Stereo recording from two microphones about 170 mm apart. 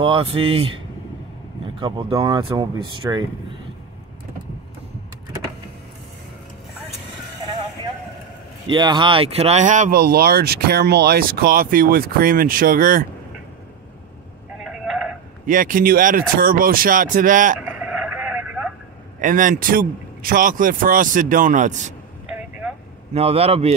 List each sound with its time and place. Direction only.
0.0 s speech: 30° right (ahead or behind)
1.8 s speech: 30° right (ahead or behind)
8.6 s speech: 30° right (ahead or behind); by 13.0 s 55° right (ahead or behind)
14.6 s telephone: centre (ahead or behind)
15.4 s speech: 55° right (ahead or behind)
17.6 s vehicle: 5° right (ahead or behind)
19.2 s speech: 50° right (ahead or behind)
22.3 s vehicle: 5° right (ahead or behind)
23.1 s speech: 35° right (ahead or behind)